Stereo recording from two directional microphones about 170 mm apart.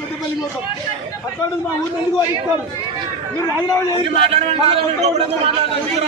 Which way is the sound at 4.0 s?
35° right (ahead or behind).